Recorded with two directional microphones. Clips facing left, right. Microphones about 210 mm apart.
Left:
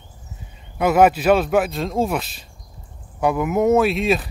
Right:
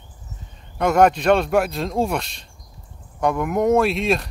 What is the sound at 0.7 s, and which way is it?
Speech, 5° left (ahead or behind).